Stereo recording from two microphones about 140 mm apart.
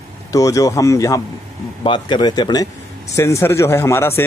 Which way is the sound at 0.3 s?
25° left (ahead or behind).